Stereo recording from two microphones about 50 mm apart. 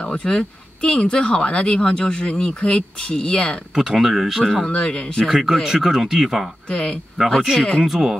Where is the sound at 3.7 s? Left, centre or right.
Centre.